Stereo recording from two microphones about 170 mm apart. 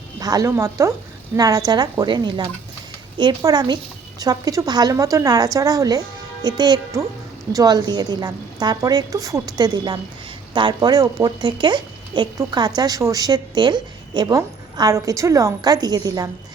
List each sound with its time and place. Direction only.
0.2 s a woman's voice: 20° right (ahead or behind)